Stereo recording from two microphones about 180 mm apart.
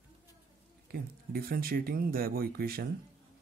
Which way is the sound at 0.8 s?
55° right (ahead or behind).